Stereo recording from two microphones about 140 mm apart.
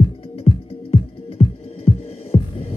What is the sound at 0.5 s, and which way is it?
Music, 45° left (ahead or behind).